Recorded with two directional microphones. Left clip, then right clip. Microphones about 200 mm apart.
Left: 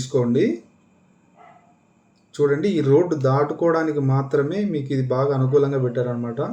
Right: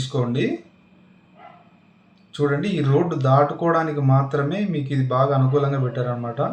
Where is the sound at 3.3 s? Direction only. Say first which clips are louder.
Right 1 dB; 50° left (ahead or behind).